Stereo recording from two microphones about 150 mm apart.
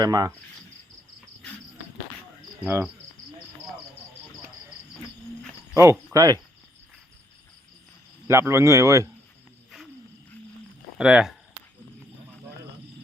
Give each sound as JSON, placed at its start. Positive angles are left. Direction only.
{"t": 0.0, "sound": "speech", "side_deg": -25}
{"t": 2.6, "sound": "cricket", "side_deg": -10}
{"t": 5.7, "sound": "cricket", "side_deg": -20}
{"t": 6.1, "sound": "speech", "side_deg": -25}
{"t": 8.3, "sound": "speech", "side_deg": -20}
{"t": 10.9, "sound": "speech", "side_deg": -5}